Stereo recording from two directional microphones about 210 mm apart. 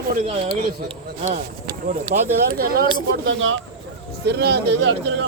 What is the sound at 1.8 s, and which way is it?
Speech, 35° right (ahead or behind).